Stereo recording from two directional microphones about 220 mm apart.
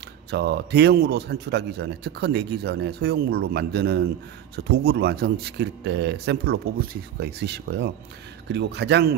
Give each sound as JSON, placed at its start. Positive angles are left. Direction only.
{"t": 0.3, "sound": "a man's voice", "side_deg": -50}